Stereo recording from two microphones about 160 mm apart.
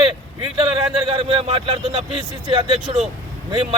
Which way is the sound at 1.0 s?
35° right (ahead or behind).